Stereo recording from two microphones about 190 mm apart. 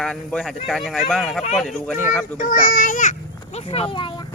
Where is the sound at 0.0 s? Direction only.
5° left (ahead or behind).